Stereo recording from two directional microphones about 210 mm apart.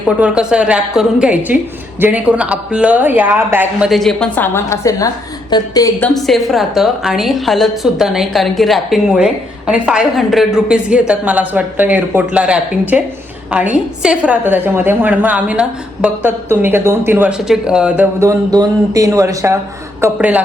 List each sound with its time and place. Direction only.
0.2 s a woman's voice: 5° right (ahead or behind); by 5.9 s 20° left (ahead or behind)
6.0 s a woman's voice: centre (ahead or behind)